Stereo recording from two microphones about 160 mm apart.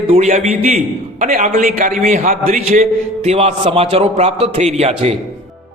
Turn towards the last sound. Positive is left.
turn(degrees=-40)  # may be behind; listen again after turning